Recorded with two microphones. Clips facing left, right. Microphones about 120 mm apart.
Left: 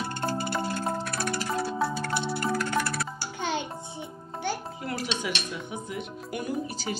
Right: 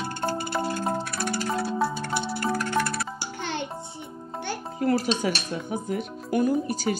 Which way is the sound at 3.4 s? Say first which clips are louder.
Left 2 dB; 10° left (ahead or behind).